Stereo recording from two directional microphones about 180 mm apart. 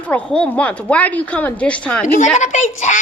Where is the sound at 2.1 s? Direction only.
45° left (ahead or behind).